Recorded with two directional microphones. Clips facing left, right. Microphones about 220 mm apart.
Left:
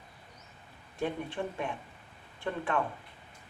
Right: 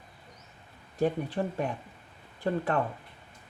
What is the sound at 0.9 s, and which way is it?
Speech, 40° right (ahead or behind).